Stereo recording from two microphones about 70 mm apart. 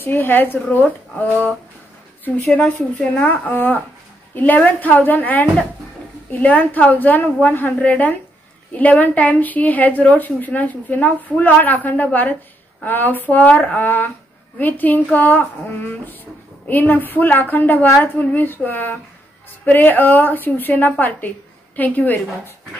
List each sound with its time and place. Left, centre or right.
0.0 s a woman's voice: left